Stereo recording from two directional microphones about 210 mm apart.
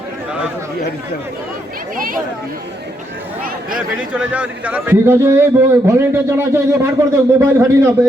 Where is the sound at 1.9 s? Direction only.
40° right (ahead or behind).